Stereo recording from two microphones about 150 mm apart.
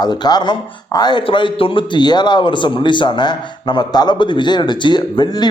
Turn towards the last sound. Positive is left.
turn(degrees=30)  # may be behind; listen again after turning